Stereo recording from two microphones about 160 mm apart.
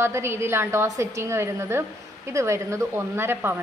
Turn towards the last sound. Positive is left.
turn(degrees=-15)  # may be behind; listen again after turning